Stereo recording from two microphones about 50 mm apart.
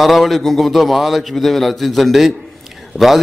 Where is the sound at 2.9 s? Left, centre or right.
Centre.